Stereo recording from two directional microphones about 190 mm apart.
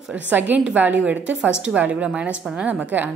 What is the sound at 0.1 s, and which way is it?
A woman's voice, 10° right (ahead or behind).